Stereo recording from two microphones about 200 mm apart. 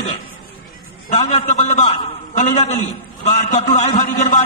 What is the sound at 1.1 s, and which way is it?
Speech, 35° left (ahead or behind).